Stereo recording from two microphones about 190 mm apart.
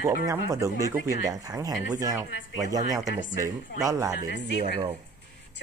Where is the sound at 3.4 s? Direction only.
15° right (ahead or behind).